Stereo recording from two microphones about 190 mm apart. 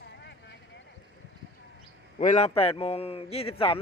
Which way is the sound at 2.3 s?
35° left (ahead or behind).